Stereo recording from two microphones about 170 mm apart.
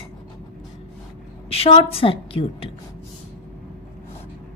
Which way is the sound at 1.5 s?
35° left (ahead or behind).